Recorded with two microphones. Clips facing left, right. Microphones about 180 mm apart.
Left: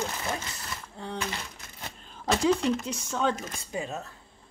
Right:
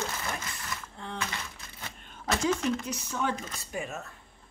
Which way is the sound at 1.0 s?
35° left (ahead or behind).